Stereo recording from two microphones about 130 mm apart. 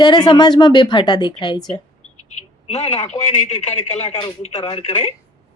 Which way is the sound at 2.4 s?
55° left (ahead or behind).